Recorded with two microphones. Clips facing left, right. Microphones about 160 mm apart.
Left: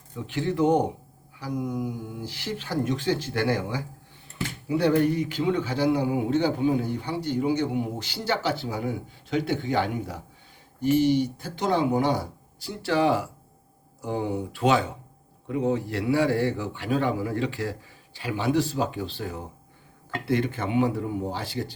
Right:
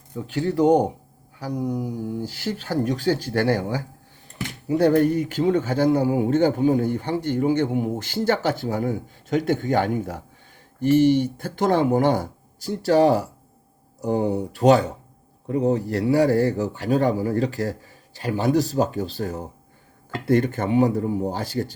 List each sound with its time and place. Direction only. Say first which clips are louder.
0.2 s a man's voice: right 4 dB; 40° right (ahead or behind)